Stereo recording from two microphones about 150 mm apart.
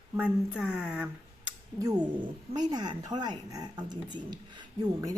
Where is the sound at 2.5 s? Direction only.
30° right (ahead or behind).